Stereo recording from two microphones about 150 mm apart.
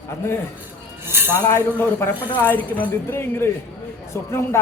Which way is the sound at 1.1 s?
15° right (ahead or behind).